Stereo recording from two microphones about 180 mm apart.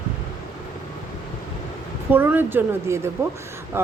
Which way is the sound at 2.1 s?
10° right (ahead or behind).